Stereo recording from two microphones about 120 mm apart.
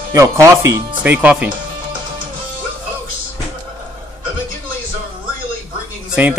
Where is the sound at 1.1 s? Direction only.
10° right (ahead or behind).